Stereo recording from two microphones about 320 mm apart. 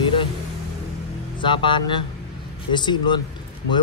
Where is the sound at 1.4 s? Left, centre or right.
Centre.